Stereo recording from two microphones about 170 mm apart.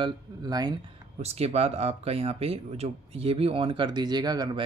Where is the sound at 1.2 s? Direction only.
40° right (ahead or behind).